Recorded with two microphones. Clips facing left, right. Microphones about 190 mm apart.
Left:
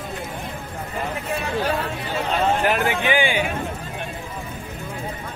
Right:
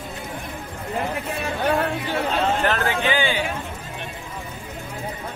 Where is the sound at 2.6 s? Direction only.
15° left (ahead or behind).